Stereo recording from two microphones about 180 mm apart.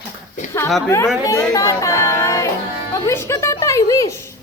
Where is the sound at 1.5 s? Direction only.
20° left (ahead or behind).